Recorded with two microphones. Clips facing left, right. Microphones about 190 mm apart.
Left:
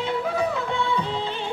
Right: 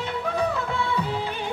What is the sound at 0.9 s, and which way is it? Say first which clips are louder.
Music of bollywood: left 1 dB; 10° right (ahead or behind).